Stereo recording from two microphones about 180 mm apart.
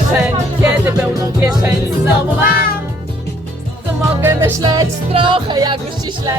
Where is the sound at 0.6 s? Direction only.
10° right (ahead or behind).